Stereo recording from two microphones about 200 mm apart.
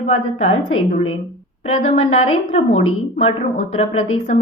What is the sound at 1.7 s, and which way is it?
Speech, 35° left (ahead or behind).